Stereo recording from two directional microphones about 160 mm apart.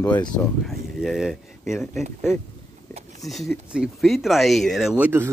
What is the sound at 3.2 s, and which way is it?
Speech, centre (ahead or behind).